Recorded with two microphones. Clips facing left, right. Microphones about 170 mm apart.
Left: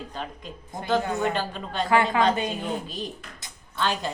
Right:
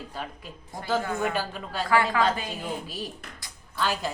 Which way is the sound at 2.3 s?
25° left (ahead or behind).